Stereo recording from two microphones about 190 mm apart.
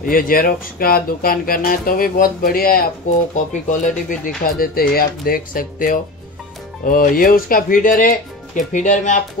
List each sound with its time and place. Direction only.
0.0 s speech: 50° left (ahead or behind)